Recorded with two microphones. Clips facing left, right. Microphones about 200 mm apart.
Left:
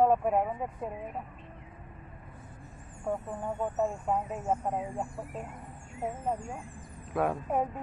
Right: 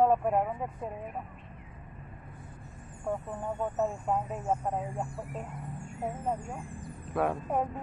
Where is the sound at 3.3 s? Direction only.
10° left (ahead or behind).